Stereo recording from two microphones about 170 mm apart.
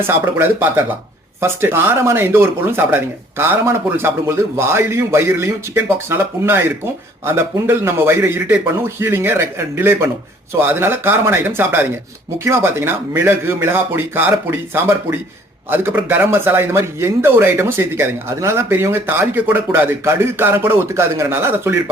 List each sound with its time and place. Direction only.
0.1 s speech: 10° right (ahead or behind)